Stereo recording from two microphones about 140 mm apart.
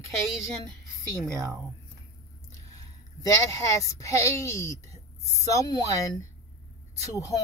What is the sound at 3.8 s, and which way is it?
A woman's voice, 20° left (ahead or behind).